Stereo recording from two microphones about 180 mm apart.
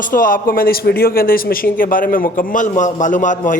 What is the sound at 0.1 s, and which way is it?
A man's voice, 50° left (ahead or behind).